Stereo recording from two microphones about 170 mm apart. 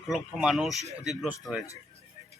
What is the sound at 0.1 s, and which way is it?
Speech, centre (ahead or behind).